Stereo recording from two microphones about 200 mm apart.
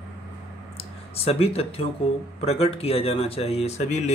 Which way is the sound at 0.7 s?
30° left (ahead or behind).